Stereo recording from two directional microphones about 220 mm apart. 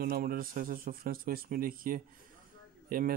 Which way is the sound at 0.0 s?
40° right (ahead or behind).